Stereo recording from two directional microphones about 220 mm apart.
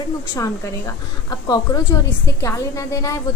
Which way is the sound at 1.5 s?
15° left (ahead or behind).